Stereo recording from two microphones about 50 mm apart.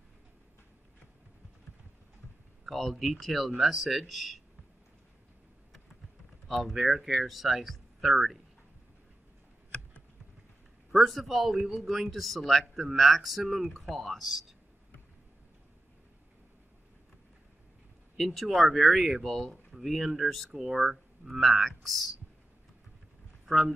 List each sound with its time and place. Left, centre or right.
2.6 s a man's voice: centre
6.4 s a man's voice: centre
11.0 s a man's voice: centre
18.1 s a man's voice: centre
23.4 s speech: centre